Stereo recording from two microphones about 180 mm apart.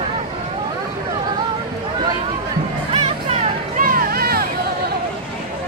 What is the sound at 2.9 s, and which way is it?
Music, 35° right (ahead or behind).